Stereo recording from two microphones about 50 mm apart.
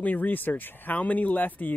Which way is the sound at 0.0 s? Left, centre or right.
Left.